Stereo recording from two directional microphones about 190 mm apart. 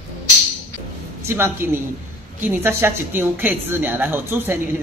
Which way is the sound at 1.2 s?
10° right (ahead or behind).